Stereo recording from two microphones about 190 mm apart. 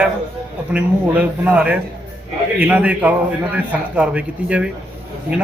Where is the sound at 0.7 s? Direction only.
10° right (ahead or behind).